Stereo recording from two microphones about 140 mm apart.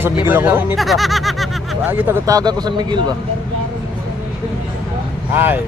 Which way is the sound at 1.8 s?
15° right (ahead or behind).